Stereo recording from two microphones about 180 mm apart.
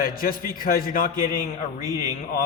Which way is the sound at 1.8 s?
20° right (ahead or behind).